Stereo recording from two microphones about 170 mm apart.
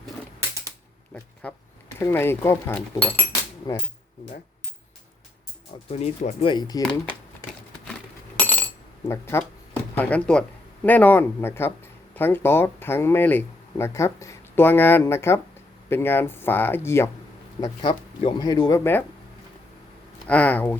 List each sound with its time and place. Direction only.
1.1 s a sound: 5° left (ahead or behind)
2.0 s speech: 15° left (ahead or behind)
5.9 s speech: 35° left (ahead or behind); by 7.0 s 20° left (ahead or behind)
8.4 s a sound: 10° left (ahead or behind)
9.0 s speech: 15° left (ahead or behind)
17.6 s speech: 30° left (ahead or behind)
18.8 s speech: 10° left (ahead or behind)
20.2 s speech: 10° left (ahead or behind)